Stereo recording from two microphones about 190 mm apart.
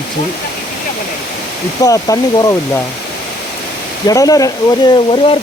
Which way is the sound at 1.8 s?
20° left (ahead or behind).